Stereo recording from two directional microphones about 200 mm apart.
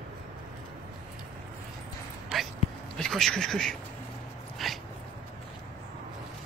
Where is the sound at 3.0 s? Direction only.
Centre (ahead or behind).